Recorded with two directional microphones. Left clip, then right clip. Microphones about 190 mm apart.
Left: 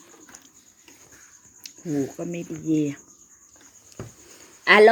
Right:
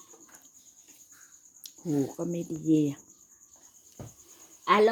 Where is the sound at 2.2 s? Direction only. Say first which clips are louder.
Left 2 dB; 20° right (ahead or behind).